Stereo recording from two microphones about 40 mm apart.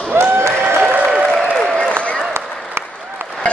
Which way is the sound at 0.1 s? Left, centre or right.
Right.